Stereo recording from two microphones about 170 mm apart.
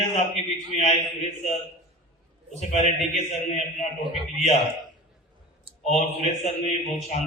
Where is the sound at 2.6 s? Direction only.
45° left (ahead or behind).